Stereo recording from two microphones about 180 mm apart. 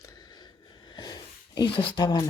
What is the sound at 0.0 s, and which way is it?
Sneeze, 20° left (ahead or behind).